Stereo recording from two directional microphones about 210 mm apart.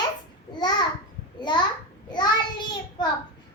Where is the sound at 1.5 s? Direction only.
20° left (ahead or behind).